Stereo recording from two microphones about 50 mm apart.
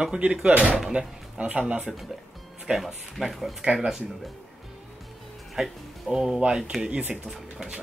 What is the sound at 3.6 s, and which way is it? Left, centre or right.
Speech, centre.